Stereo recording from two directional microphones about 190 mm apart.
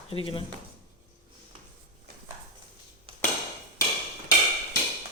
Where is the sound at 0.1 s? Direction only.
30° left (ahead or behind).